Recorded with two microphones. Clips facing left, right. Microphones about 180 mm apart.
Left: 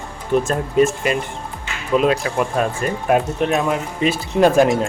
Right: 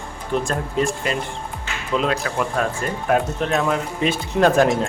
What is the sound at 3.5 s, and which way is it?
Speech, 5° left (ahead or behind).